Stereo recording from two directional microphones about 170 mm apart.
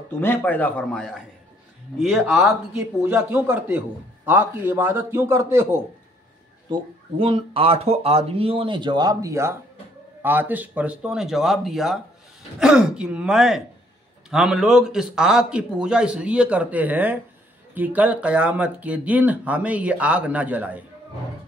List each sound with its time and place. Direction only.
0.2 s a man's voice: 10° left (ahead or behind)
3.0 s speech: 10° right (ahead or behind)
6.7 s speech: 30° right (ahead or behind); by 20.8 s 10° right (ahead or behind)